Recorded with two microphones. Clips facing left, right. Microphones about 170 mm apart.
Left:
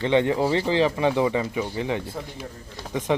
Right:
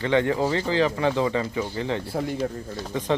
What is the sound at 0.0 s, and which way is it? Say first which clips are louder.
Speech: left 1 dB; 20° left (ahead or behind).